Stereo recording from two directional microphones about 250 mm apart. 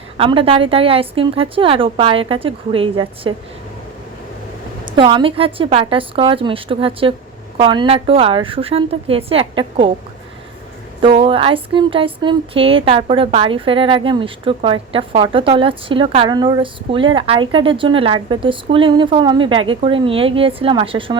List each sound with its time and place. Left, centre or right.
0.2 s speech: right
4.9 s speech: centre
11.0 s speech: right